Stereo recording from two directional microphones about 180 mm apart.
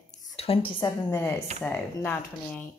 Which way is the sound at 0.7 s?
15° left (ahead or behind).